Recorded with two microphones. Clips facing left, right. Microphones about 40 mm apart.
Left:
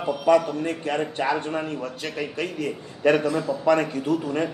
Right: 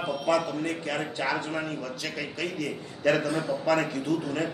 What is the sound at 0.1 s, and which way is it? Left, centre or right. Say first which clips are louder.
A man's voice: left 8 dB; left.